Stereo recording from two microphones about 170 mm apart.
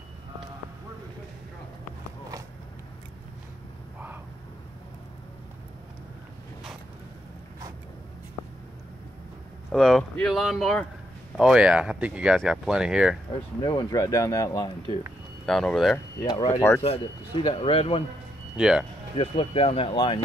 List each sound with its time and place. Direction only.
9.7 s speech: centre (ahead or behind)
13.6 s speech: 25° left (ahead or behind)
15.4 s speech: 5° left (ahead or behind)
16.8 s speech: 35° left (ahead or behind)
18.6 s speech: 5° right (ahead or behind)
19.1 s speech: 35° left (ahead or behind)